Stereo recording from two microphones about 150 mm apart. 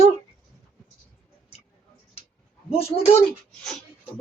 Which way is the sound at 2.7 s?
40° left (ahead or behind).